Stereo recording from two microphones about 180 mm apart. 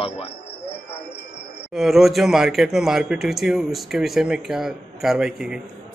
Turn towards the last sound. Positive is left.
turn(degrees=-5)  # may be behind; listen again after turning